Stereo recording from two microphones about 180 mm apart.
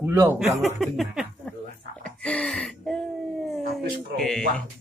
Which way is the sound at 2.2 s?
5° left (ahead or behind).